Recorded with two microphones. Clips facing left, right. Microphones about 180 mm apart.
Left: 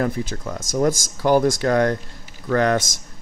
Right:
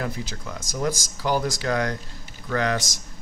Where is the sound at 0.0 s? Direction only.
45° left (ahead or behind).